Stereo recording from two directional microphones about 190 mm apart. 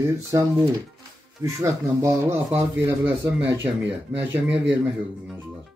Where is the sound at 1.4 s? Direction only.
15° right (ahead or behind).